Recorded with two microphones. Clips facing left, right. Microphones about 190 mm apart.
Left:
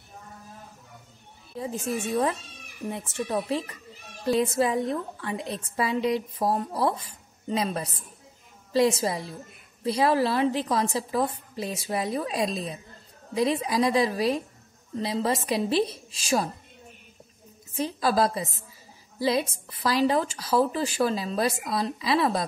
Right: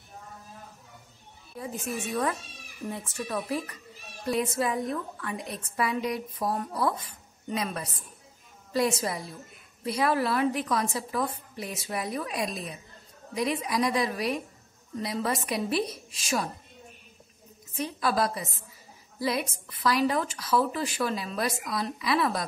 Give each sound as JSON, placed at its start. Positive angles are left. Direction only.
{"t": 1.6, "sound": "a woman's voice", "side_deg": 30}
{"t": 9.0, "sound": "a woman's voice", "side_deg": 30}
{"t": 17.7, "sound": "a woman's voice", "side_deg": 30}